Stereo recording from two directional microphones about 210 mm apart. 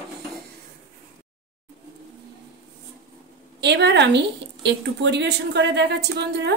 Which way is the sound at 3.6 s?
55° right (ahead or behind).